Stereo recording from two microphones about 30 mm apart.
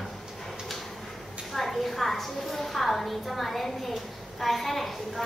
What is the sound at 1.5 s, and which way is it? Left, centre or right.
A woman's voice, centre.